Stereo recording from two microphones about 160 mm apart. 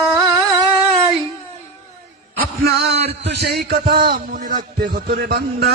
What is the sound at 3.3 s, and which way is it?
Speech, 90° right.